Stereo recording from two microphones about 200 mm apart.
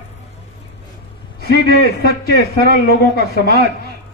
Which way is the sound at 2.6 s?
50° left (ahead or behind).